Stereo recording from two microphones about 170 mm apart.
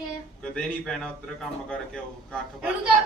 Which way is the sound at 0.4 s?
5° left (ahead or behind).